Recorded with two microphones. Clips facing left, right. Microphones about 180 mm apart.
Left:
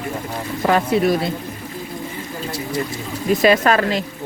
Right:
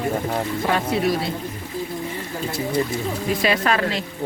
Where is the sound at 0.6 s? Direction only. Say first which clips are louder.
Left 6 dB; 60° left (ahead or behind).